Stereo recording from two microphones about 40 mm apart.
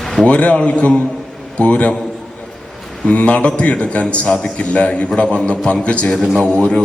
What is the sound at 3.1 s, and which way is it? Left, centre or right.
Speech, left.